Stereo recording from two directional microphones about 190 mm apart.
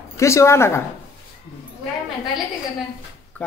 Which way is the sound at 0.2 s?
15° left (ahead or behind).